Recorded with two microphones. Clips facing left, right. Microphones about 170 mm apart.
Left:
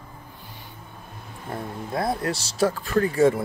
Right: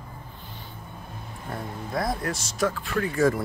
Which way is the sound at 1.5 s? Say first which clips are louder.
Left 2 dB; 30° left (ahead or behind).